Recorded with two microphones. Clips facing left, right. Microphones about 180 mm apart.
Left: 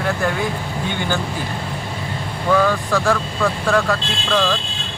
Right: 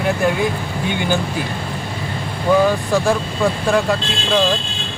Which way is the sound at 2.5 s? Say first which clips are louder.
Right 2 dB; 20° right (ahead or behind).